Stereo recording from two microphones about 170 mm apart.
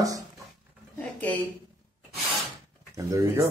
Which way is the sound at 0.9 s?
10° left (ahead or behind).